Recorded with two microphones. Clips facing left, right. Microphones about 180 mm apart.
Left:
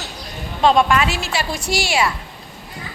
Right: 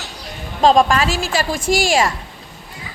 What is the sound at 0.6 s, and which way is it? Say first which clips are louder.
Speech: right 2 dB; 40° right (ahead or behind).